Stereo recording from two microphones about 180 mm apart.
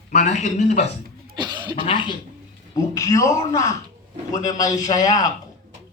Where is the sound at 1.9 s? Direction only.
25° left (ahead or behind).